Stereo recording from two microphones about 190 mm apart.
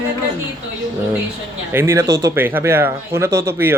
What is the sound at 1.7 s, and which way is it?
Speech, 15° right (ahead or behind).